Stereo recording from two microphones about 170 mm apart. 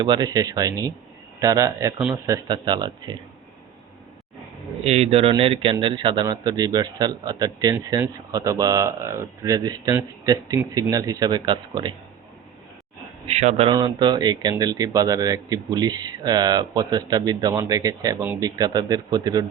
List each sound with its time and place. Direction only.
0.0 s speech: 25° right (ahead or behind)
4.8 s speech: 35° right (ahead or behind)
13.2 s a man's voice: 40° right (ahead or behind)
13.7 s speech: 25° right (ahead or behind)